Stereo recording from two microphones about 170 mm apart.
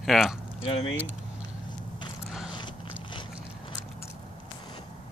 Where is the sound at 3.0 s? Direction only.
30° left (ahead or behind).